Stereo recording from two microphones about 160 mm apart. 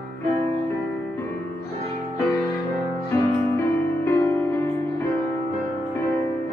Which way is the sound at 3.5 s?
15° left (ahead or behind).